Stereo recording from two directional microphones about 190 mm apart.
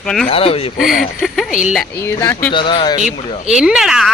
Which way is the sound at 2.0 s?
15° left (ahead or behind).